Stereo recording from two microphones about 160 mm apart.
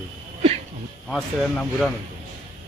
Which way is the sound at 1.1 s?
Centre (ahead or behind).